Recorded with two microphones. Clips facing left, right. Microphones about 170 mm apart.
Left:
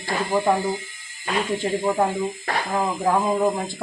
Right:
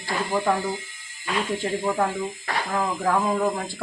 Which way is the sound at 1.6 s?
15° left (ahead or behind).